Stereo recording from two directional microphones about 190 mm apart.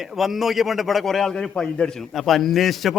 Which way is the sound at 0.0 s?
Centre (ahead or behind).